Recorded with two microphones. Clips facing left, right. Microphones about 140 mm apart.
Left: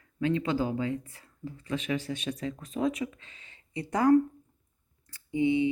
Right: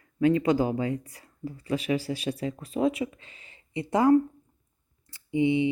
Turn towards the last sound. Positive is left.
turn(degrees=-25)  # may be behind; listen again after turning